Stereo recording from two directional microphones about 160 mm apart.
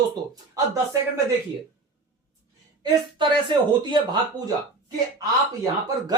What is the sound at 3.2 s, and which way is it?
Speech, 30° right (ahead or behind).